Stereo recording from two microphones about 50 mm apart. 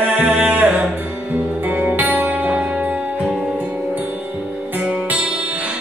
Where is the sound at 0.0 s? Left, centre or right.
Right.